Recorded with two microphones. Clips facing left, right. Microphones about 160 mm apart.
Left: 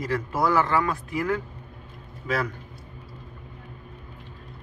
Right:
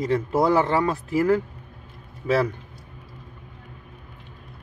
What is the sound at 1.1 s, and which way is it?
Speech, 35° right (ahead or behind).